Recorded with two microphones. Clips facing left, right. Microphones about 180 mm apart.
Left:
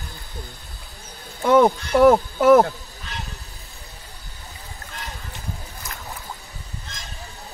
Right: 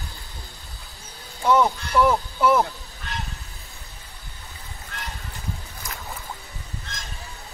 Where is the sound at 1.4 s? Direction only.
55° left (ahead or behind).